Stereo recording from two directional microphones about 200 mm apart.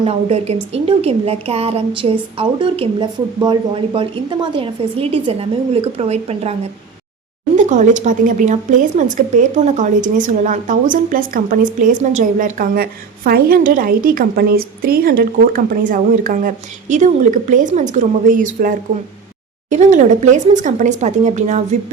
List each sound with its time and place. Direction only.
0.0 s speech: 30° right (ahead or behind)